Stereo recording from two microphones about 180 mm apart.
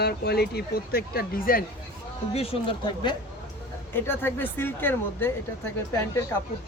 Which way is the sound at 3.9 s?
10° left (ahead or behind).